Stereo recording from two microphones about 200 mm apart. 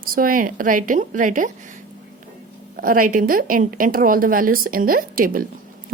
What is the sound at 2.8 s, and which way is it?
A woman's voice, 45° right (ahead or behind).